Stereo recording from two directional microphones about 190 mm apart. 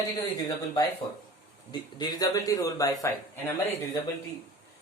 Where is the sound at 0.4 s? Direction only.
20° left (ahead or behind).